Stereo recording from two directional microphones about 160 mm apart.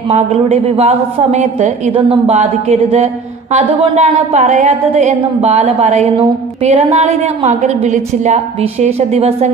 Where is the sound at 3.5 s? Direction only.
35° right (ahead or behind).